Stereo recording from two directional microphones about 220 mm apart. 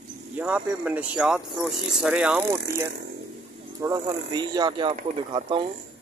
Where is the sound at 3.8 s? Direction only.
20° right (ahead or behind).